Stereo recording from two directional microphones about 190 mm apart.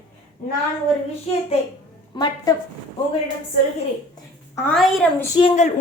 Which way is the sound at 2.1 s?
20° left (ahead or behind).